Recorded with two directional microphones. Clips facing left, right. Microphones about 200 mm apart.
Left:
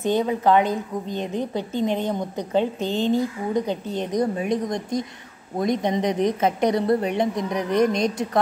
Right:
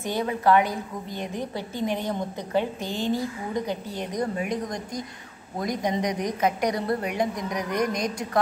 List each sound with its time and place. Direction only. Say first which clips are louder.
0.0 s a woman's voice: left 4 dB; 20° left (ahead or behind)
2.8 s speech: left 6 dB; 15° right (ahead or behind)
3.1 s a woman's voice: left 5 dB; 20° left (ahead or behind)